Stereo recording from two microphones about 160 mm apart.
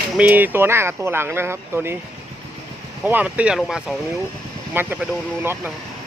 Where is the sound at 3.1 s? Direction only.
10° right (ahead or behind).